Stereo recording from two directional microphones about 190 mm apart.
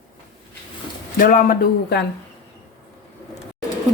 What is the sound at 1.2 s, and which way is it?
Speech, 45° left (ahead or behind).